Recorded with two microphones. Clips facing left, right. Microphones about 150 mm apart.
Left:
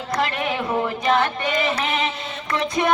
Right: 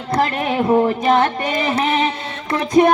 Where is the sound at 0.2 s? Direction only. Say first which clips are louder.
Right 6 dB; 35° right (ahead or behind).